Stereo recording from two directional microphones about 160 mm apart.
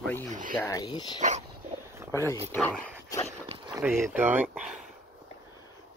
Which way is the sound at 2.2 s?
15° left (ahead or behind).